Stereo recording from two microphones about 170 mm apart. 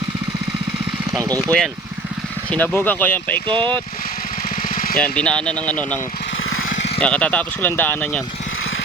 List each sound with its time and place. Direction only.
1.2 s speech: 20° right (ahead or behind)
2.5 s speech: 10° left (ahead or behind)
3.4 s speech: 30° right (ahead or behind)
4.7 s a sound: 55° left (ahead or behind)
4.9 s speech: 5° left (ahead or behind)
6.7 s vehicle: 90° left
7.0 s speech: 5° left (ahead or behind)